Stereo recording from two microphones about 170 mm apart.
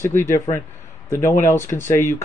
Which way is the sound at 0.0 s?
15° left (ahead or behind).